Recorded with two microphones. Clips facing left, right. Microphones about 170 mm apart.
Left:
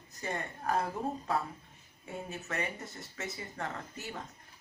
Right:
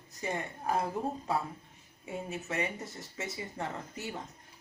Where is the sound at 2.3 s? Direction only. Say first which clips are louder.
Right 3 dB; 15° right (ahead or behind).